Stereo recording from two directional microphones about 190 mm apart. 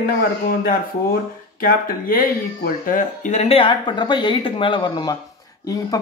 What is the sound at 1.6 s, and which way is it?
Speech, 50° left (ahead or behind).